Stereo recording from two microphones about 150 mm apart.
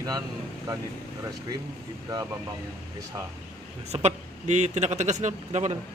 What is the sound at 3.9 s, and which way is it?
A man's voice, 45° right (ahead or behind).